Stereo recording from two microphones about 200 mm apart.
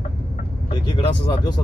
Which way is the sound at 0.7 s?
25° left (ahead or behind).